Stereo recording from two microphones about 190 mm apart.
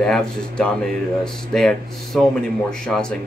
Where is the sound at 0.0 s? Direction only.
5° left (ahead or behind).